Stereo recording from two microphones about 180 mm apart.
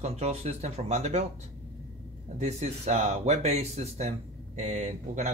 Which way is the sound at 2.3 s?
40° right (ahead or behind).